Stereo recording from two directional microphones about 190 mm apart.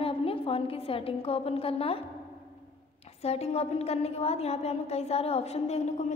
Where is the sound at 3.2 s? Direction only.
35° left (ahead or behind).